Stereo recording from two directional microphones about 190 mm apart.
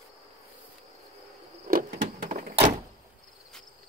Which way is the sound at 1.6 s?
50° right (ahead or behind).